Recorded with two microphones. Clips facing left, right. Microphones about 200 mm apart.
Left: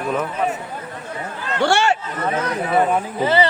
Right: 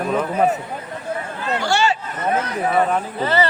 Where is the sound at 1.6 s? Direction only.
60° left (ahead or behind).